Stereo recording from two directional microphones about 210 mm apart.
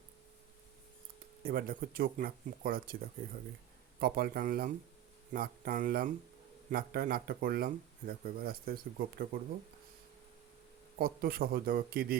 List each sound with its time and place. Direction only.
1.5 s speech: 45° right (ahead or behind)
4.0 s speech: 45° right (ahead or behind)
10.9 s speech: 45° right (ahead or behind)